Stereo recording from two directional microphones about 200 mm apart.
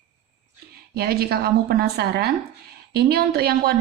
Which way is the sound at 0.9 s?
50° right (ahead or behind).